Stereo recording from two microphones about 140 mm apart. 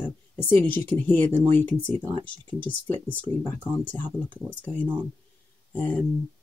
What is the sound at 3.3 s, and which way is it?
Speech, 20° left (ahead or behind).